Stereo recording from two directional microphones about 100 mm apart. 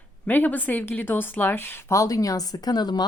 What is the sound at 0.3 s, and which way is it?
A woman's voice, 20° left (ahead or behind).